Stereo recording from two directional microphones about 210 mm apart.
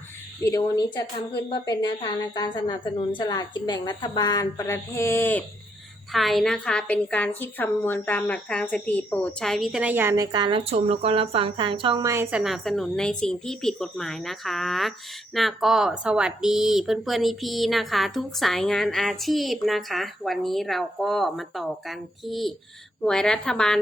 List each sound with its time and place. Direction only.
0.4 s a woman's voice: 15° left (ahead or behind)